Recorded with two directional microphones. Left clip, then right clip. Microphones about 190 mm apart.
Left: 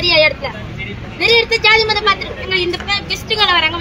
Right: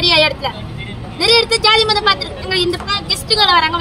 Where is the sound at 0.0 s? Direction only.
15° right (ahead or behind).